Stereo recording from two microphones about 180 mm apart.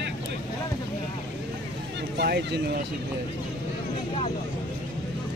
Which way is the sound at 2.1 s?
65° right (ahead or behind).